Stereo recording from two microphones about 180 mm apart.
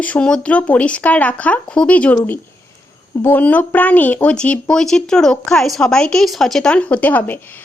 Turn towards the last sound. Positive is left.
turn(degrees=10)  # may be behind; listen again after turning